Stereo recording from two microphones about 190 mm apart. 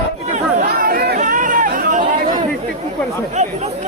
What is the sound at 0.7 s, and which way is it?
Chatter, 50° right (ahead or behind).